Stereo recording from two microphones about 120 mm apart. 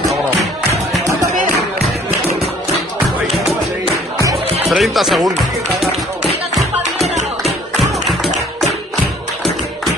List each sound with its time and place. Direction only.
0.7 s music: 25° right (ahead or behind)
4.6 s speech: centre (ahead or behind)
6.2 s music: centre (ahead or behind)
7.4 s tap: centre (ahead or behind)